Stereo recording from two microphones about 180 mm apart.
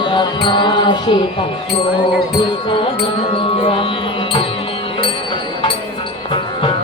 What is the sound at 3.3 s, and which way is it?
Music, 30° left (ahead or behind).